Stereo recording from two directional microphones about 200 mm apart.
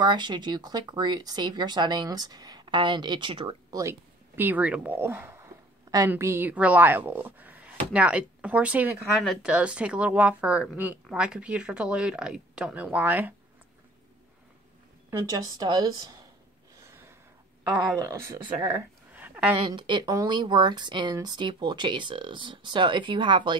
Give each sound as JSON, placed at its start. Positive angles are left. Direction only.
{"t": 0.0, "sound": "speech", "side_deg": -20}
{"t": 4.4, "sound": "a woman's voice", "side_deg": -10}
{"t": 15.0, "sound": "speech", "side_deg": -20}
{"t": 16.8, "sound": "snort", "side_deg": -10}
{"t": 18.0, "sound": "speech", "side_deg": -15}
{"t": 19.1, "sound": "a sound", "side_deg": -10}
{"t": 19.5, "sound": "speech", "side_deg": -25}